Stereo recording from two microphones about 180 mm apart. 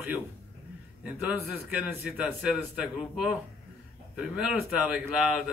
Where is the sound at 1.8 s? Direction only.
Centre (ahead or behind).